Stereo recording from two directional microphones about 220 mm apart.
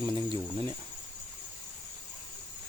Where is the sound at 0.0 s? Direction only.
20° right (ahead or behind).